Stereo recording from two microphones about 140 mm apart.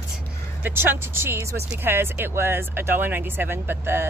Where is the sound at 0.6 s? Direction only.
15° right (ahead or behind).